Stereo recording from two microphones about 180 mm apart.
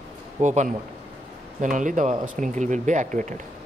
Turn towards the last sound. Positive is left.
turn(degrees=-45)  # may be behind; listen again after turning